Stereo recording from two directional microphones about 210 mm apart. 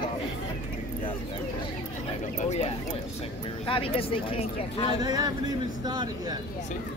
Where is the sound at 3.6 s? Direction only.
25° left (ahead or behind).